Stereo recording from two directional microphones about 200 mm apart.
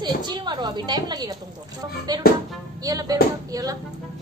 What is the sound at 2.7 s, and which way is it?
A woman's voice, 20° right (ahead or behind).